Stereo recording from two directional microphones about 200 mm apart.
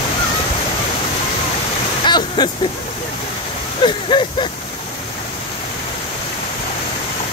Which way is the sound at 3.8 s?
25° left (ahead or behind).